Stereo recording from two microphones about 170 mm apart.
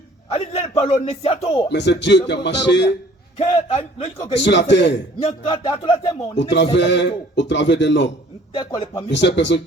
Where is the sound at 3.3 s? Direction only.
35° left (ahead or behind).